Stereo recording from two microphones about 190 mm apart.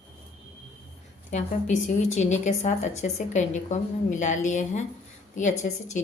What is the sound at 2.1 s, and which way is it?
A woman's voice, 35° left (ahead or behind).